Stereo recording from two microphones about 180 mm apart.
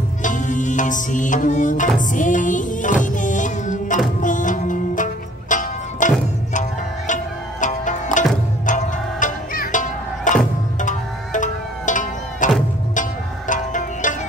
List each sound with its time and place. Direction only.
0.2 s music: 45° left (ahead or behind)
7.6 s music: 45° left (ahead or behind)
13.5 s music: 45° left (ahead or behind)